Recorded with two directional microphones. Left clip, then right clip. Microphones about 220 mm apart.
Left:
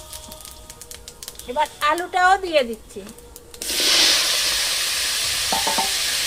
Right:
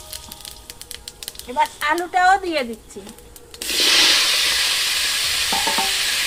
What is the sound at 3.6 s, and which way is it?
Sanding, 5° right (ahead or behind).